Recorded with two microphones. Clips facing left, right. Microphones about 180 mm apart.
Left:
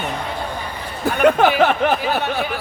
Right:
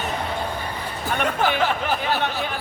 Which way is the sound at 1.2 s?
65° left (ahead or behind).